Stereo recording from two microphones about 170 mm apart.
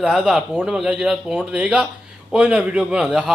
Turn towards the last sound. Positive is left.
turn(degrees=-5)  # may be behind; listen again after turning